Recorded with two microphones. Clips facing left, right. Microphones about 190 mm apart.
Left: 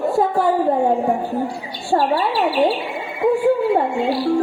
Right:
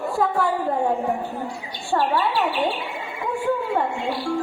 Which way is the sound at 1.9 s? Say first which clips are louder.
Left 4 dB; 35° left (ahead or behind).